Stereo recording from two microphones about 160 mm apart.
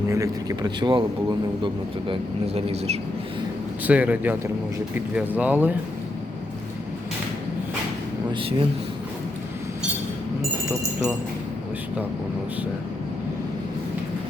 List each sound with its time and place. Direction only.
0.1 s a man's voice: 20° right (ahead or behind); by 3.0 s 40° right (ahead or behind)
3.8 s speech: 10° right (ahead or behind)
8.3 s speech: 30° right (ahead or behind)